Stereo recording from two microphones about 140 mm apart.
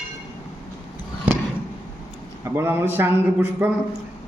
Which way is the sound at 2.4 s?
15° right (ahead or behind).